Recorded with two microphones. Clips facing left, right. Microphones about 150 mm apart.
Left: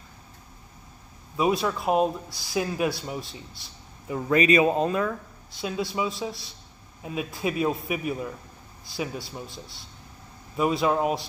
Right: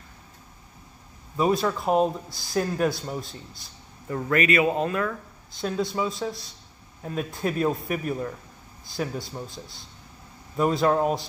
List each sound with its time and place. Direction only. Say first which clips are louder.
1.3 s speech: right 1 dB; 5° left (ahead or behind)
4.3 s speech: left 2 dB; 20° left (ahead or behind)
5.6 s a man's voice: right 2 dB; 5° left (ahead or behind)
10.6 s a man's voice: right 2 dB; 5° left (ahead or behind)